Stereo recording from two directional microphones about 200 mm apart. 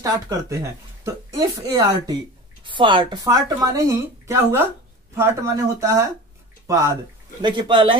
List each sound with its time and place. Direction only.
0.0 s a woman's voice: 15° right (ahead or behind)
7.4 s speech: 25° right (ahead or behind)